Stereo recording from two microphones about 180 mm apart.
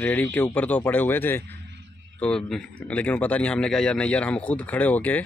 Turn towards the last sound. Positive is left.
turn(degrees=10)  # may be behind; listen again after turning